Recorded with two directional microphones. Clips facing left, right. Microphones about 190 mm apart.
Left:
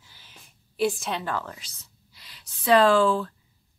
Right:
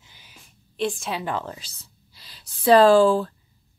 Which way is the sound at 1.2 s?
25° right (ahead or behind).